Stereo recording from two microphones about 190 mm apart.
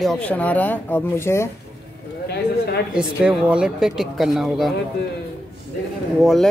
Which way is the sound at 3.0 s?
5° right (ahead or behind).